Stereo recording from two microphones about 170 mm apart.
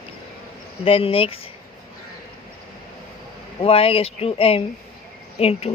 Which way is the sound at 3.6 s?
35° left (ahead or behind).